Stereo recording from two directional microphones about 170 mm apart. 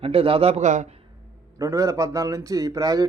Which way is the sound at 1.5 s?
20° right (ahead or behind).